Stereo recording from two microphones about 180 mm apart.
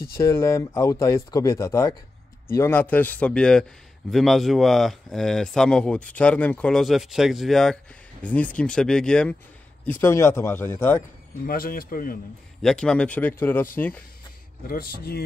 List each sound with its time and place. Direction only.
0.2 s speech: 15° left (ahead or behind)
11.4 s speech: 55° left (ahead or behind)
12.6 s speech: 5° left (ahead or behind)
14.7 s speech: 55° left (ahead or behind)